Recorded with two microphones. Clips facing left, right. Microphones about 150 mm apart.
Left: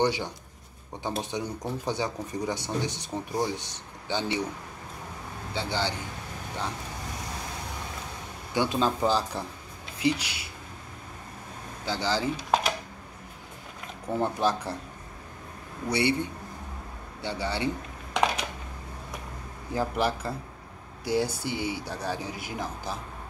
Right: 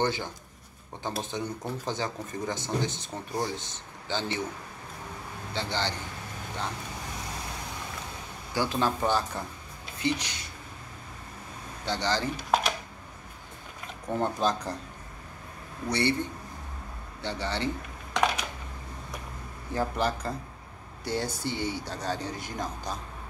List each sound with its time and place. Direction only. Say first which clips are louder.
0.0 s speech: left 3 dB; 15° left (ahead or behind)
5.5 s speech: left 1 dB; 10° left (ahead or behind)
8.5 s speech: left 2 dB; 15° left (ahead or behind)
11.8 s speech: left 1 dB; 5° left (ahead or behind)
14.1 s speech: left 1 dB; 5° left (ahead or behind)
15.9 s speech: left 1 dB; 10° left (ahead or behind)
19.7 s speech: left 1 dB; 10° left (ahead or behind)